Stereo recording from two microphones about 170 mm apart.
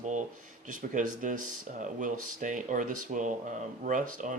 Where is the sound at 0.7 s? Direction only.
50° right (ahead or behind).